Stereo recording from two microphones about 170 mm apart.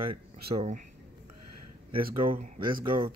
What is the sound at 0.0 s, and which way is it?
Speech, 30° right (ahead or behind).